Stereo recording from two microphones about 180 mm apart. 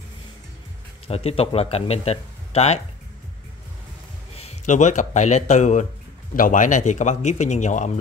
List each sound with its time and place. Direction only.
1.0 s speech: 35° left (ahead or behind)
4.4 s a man's voice: 40° left (ahead or behind)